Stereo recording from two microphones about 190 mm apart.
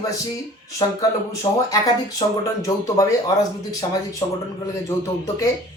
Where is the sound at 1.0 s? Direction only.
15° left (ahead or behind).